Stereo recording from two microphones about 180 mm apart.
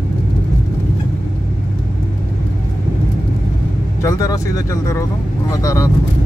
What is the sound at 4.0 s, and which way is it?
Speech, 20° left (ahead or behind).